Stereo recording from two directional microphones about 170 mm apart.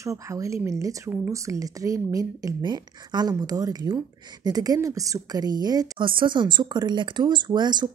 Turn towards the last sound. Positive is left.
turn(degrees=-25)  # may be behind; listen again after turning